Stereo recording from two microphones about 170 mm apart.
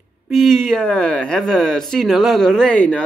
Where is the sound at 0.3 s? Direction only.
Centre (ahead or behind).